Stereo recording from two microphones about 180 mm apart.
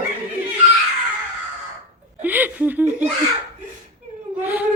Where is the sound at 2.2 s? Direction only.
10° right (ahead or behind).